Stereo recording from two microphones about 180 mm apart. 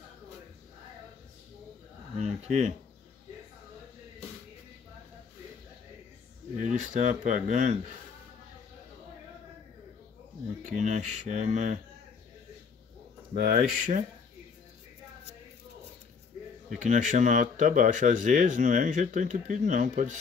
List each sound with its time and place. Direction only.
2.1 s speech: 40° right (ahead or behind)
6.5 s speech: 45° right (ahead or behind)
10.6 s speech: 40° right (ahead or behind)
13.3 s speech: 50° right (ahead or behind)
16.8 s speech: 45° right (ahead or behind)